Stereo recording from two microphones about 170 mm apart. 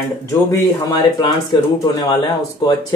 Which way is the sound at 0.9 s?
25° left (ahead or behind).